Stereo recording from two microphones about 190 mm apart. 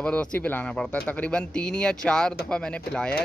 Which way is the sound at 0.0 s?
5° left (ahead or behind).